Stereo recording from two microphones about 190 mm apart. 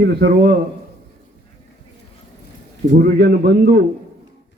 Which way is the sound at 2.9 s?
50° right (ahead or behind).